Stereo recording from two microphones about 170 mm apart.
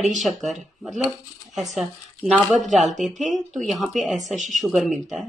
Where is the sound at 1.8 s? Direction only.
Centre (ahead or behind).